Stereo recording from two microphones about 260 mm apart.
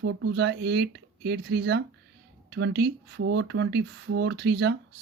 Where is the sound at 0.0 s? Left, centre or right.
Right.